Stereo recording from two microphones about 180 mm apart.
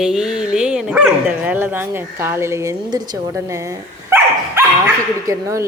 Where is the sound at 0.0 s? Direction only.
5° right (ahead or behind).